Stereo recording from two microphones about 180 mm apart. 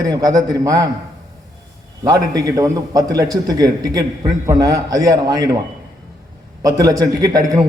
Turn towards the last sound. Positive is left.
turn(degrees=-20)  # may be behind; listen again after turning